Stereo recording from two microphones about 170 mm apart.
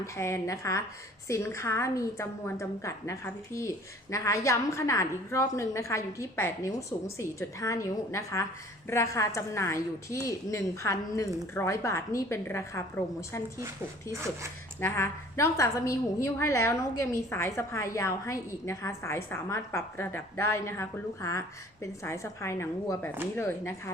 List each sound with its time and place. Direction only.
0.0 s a woman's voice: 15° left (ahead or behind)
14.8 s a woman's voice: 15° left (ahead or behind)